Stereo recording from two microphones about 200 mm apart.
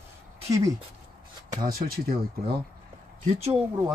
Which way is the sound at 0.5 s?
15° right (ahead or behind).